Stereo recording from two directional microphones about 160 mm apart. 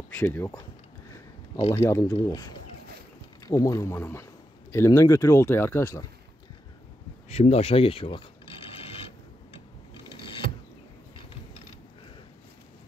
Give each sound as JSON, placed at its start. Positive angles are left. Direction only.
{"t": 0.2, "sound": "a man's voice", "side_deg": 15}
{"t": 1.7, "sound": "a man's voice", "side_deg": 15}
{"t": 7.2, "sound": "mechanisms", "side_deg": 40}